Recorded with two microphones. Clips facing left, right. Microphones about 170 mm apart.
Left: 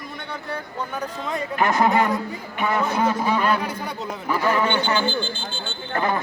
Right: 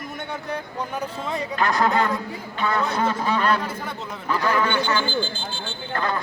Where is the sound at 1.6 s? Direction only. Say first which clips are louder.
Left 2 dB; 20° left (ahead or behind).